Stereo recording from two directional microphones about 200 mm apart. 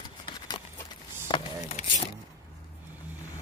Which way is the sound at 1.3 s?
25° left (ahead or behind).